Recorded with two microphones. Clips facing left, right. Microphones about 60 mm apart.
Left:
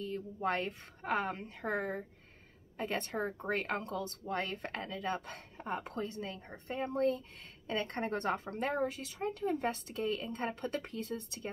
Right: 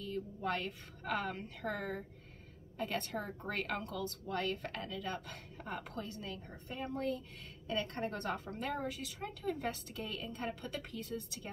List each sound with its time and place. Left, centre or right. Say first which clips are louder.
0.0 s a woman's voice: left 3 dB; left
10.8 s speech: left 3 dB; left